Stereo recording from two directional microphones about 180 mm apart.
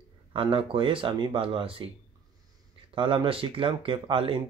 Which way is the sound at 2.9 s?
30° right (ahead or behind).